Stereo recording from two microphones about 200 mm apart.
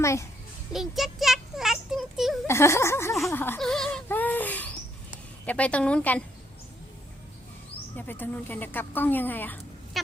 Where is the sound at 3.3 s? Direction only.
10° left (ahead or behind).